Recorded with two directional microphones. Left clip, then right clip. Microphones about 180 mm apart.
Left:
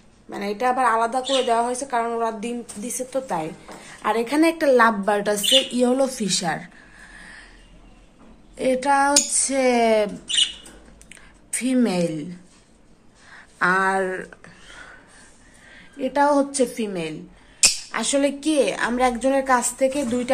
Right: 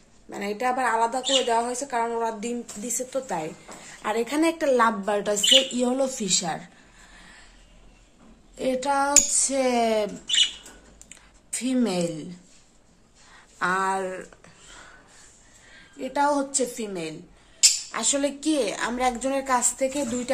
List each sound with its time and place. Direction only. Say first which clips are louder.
0.3 s a woman's voice: left 4 dB; 10° right (ahead or behind)
8.5 s a woman's voice: left 5 dB; 5° right (ahead or behind)
11.1 s a sound: left 3 dB; 5° right (ahead or behind)
15.7 s a woman's voice: left 5 dB; centre (ahead or behind)